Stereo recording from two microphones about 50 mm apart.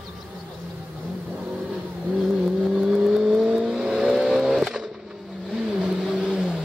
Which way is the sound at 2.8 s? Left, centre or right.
Centre.